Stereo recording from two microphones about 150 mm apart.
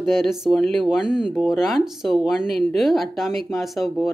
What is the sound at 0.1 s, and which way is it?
Speech, centre (ahead or behind).